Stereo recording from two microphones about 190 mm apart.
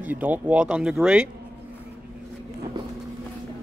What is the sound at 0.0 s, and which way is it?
Speech, 10° right (ahead or behind).